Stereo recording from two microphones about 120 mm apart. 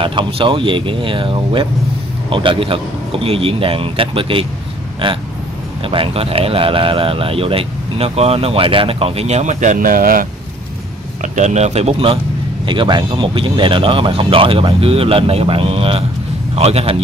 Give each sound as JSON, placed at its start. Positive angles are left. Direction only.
{"t": 0.0, "sound": "speech", "side_deg": -45}
{"t": 11.3, "sound": "speech", "side_deg": -75}
{"t": 12.6, "sound": "speech", "side_deg": -40}